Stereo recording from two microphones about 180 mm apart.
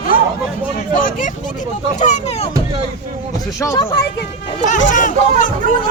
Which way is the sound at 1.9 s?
40° left (ahead or behind).